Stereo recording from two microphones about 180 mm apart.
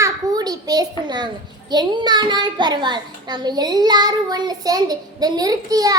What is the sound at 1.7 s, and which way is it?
A child's voice, 25° right (ahead or behind).